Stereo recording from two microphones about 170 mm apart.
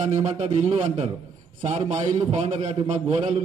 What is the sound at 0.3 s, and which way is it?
Speech, 35° right (ahead or behind).